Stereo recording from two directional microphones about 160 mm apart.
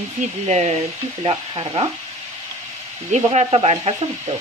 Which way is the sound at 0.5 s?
40° right (ahead or behind).